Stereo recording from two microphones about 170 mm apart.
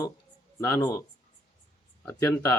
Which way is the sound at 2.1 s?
15° left (ahead or behind).